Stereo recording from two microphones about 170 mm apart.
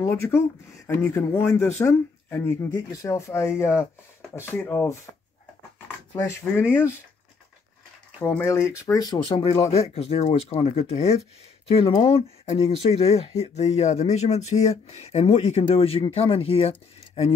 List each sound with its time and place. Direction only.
0.0 s speech: 15° left (ahead or behind)
6.2 s speech: 15° left (ahead or behind)
8.2 s speech: 15° left (ahead or behind); by 17.3 s 35° left (ahead or behind)